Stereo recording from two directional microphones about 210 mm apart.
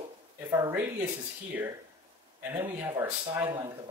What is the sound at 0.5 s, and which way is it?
Speech, 10° right (ahead or behind).